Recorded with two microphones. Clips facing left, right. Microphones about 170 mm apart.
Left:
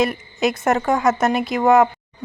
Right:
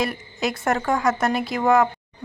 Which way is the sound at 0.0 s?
20° left (ahead or behind).